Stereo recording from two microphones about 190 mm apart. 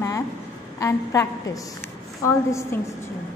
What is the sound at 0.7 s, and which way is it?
A woman's voice, 15° left (ahead or behind).